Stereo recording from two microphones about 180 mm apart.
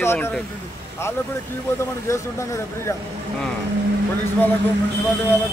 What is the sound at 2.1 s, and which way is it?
Speech, 15° left (ahead or behind).